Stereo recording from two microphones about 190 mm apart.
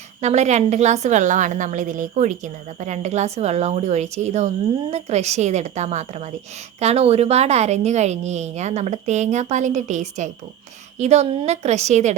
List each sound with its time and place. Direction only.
0.2 s a woman's voice: 35° right (ahead or behind)